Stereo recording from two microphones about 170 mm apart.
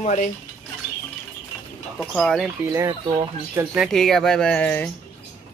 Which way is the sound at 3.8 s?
Centre (ahead or behind).